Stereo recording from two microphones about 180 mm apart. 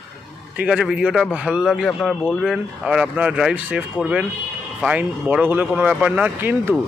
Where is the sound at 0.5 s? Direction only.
5° right (ahead or behind).